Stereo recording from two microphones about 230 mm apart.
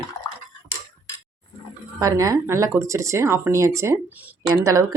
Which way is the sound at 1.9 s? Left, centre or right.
Centre.